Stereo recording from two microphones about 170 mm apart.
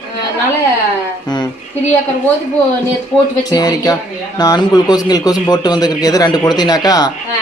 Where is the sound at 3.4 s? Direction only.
25° left (ahead or behind).